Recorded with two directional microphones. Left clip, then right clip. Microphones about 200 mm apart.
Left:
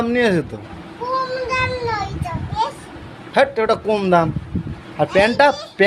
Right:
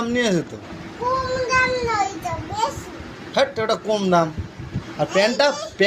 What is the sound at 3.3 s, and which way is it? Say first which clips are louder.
A man's voice: left 4 dB; 40° left (ahead or behind).